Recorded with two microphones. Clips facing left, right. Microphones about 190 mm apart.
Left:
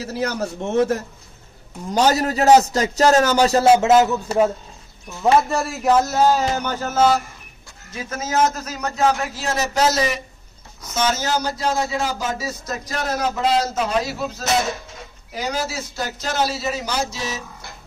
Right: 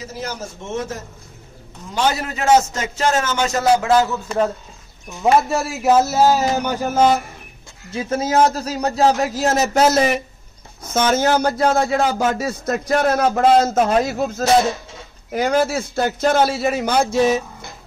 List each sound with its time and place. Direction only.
0.0 s a man's voice: 65° left (ahead or behind)
2.0 s a man's voice: 40° left (ahead or behind); by 4.2 s 20° left (ahead or behind)
5.5 s speech: centre (ahead or behind)
7.9 s a man's voice: 30° right (ahead or behind); by 17.4 s 55° right (ahead or behind)